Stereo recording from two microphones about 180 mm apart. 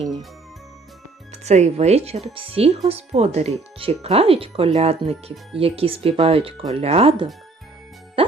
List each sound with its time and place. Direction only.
1.3 s speech: 40° right (ahead or behind)